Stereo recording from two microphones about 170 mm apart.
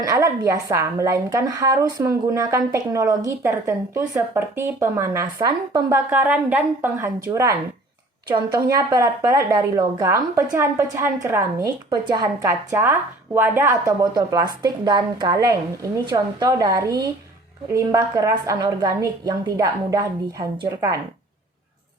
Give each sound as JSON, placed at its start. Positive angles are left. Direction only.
{"t": 0.0, "sound": "a woman's voice", "side_deg": -20}
{"t": 6.1, "sound": "a woman's voice", "side_deg": -10}
{"t": 8.6, "sound": "a woman's voice", "side_deg": -20}
{"t": 14.0, "sound": "a woman's voice", "side_deg": -25}